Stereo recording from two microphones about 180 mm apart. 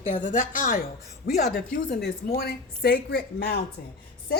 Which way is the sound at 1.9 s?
60° left (ahead or behind).